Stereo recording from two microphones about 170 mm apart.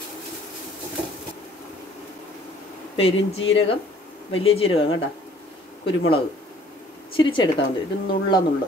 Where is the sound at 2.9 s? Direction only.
35° left (ahead or behind).